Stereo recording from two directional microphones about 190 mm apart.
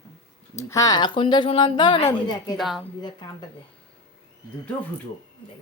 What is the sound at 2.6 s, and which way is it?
Speech, centre (ahead or behind).